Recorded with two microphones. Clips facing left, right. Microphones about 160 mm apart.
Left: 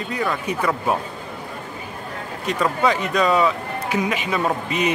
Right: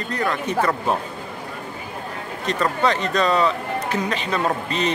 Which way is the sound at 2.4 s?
5° left (ahead or behind).